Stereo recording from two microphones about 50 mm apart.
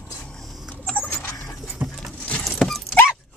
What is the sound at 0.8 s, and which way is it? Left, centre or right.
Rodents, left.